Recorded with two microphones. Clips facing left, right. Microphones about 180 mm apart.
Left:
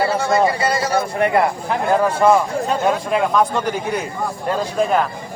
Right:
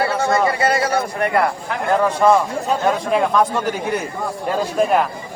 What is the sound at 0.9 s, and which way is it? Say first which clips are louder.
Speech: left 2 dB; 25° left (ahead or behind).